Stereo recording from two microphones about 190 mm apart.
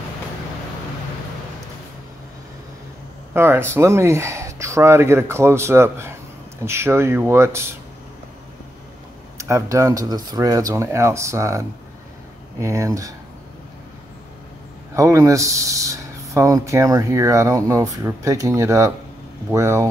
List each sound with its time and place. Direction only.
3.3 s speech: 10° right (ahead or behind)
9.4 s speech: 15° right (ahead or behind)
15.0 s speech: 15° right (ahead or behind)